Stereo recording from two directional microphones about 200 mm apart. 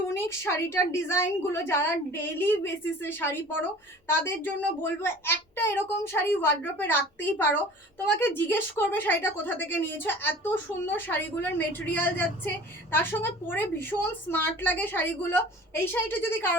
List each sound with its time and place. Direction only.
0.2 s a woman's voice: 15° left (ahead or behind)